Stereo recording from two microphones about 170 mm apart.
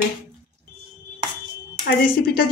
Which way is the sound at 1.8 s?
65° left (ahead or behind).